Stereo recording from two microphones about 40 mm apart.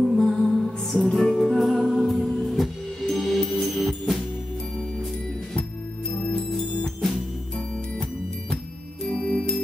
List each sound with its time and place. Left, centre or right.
0.2 s music: centre
6.2 s music: centre
9.1 s music: left